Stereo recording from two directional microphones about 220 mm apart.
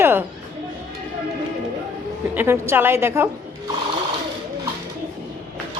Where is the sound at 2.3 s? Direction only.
10° right (ahead or behind).